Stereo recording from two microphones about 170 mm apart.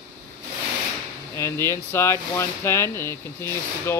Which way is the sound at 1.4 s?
15° left (ahead or behind).